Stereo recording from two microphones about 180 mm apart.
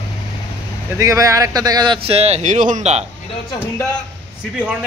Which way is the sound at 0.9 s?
15° right (ahead or behind).